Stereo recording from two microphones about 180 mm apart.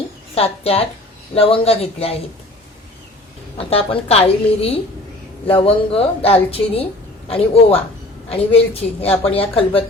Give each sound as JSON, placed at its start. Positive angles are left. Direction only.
{"t": 0.3, "sound": "a woman's voice", "side_deg": 35}
{"t": 3.7, "sound": "a woman's voice", "side_deg": 35}